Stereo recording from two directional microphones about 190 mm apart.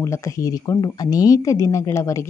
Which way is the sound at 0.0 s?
15° left (ahead or behind).